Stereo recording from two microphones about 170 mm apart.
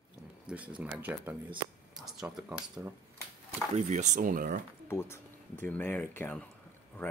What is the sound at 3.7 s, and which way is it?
Speech, 45° right (ahead or behind).